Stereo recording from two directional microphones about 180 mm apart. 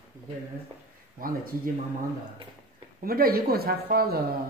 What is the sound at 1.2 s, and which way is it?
Speech, 50° right (ahead or behind).